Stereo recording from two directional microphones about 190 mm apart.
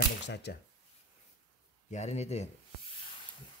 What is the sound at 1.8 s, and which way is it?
Speech, 35° left (ahead or behind).